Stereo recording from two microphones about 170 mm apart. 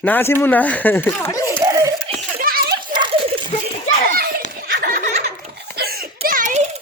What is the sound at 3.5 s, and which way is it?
Children playing, 45° left (ahead or behind).